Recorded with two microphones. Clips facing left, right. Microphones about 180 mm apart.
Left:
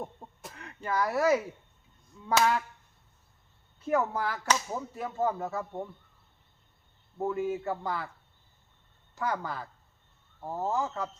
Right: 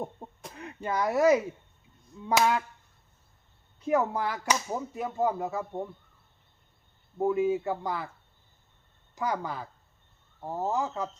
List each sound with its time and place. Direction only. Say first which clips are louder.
0.2 s throat clearing: right 4 dB; 20° right (ahead or behind)
0.5 s speech: right 1 dB; 20° right (ahead or behind)
2.3 s whip: right 1 dB; 15° right (ahead or behind)
3.8 s whip: right 2 dB; 15° right (ahead or behind)
7.2 s whip: right 5 dB; 15° right (ahead or behind)
9.1 s whip: right 1 dB; 15° right (ahead or behind)